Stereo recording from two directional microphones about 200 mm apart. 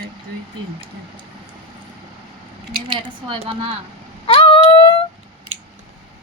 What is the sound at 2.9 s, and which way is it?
Speech, 25° right (ahead or behind).